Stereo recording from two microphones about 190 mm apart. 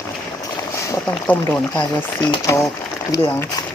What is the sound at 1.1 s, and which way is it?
Speech, 10° left (ahead or behind).